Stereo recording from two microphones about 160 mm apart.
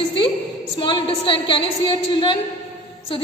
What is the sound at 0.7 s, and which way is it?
A woman's voice, 30° left (ahead or behind).